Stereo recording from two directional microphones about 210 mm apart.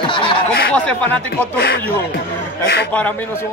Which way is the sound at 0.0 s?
25° left (ahead or behind).